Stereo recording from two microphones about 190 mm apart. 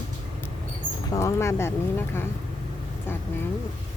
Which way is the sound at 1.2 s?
15° left (ahead or behind).